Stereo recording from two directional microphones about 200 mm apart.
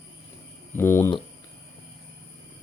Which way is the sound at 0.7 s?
10° left (ahead or behind).